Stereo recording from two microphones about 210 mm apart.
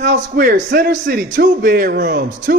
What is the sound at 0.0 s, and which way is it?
A man's voice, 40° right (ahead or behind).